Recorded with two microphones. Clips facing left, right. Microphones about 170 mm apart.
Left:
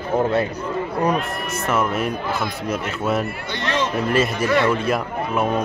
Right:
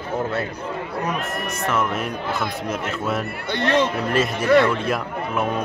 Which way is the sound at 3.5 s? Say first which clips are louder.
Right 4 dB; 55° right (ahead or behind).